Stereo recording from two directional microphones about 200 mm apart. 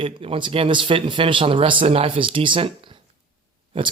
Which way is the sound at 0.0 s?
25° right (ahead or behind).